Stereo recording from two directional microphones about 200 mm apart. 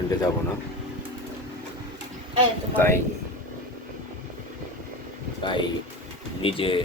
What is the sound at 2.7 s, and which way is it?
Speech, 10° left (ahead or behind).